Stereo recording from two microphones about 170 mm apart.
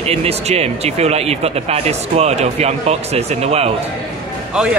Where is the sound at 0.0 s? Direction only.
35° right (ahead or behind).